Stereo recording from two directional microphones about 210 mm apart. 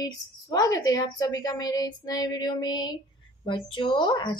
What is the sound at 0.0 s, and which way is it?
A woman's voice, 20° left (ahead or behind).